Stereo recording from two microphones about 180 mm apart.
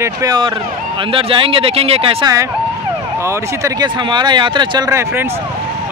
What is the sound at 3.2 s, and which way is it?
Speech, 15° right (ahead or behind).